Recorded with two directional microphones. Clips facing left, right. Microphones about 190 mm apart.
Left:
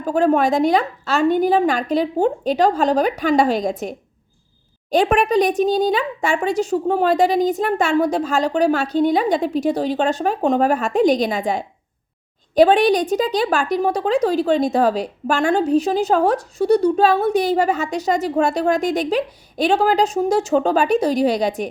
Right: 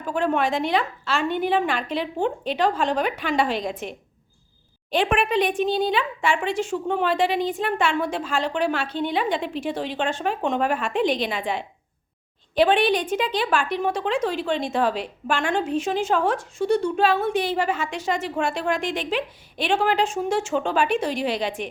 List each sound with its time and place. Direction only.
0.0 s a woman's voice: 40° left (ahead or behind)